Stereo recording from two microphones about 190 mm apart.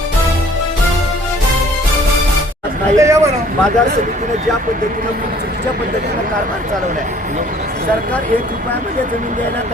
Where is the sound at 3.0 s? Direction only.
15° right (ahead or behind).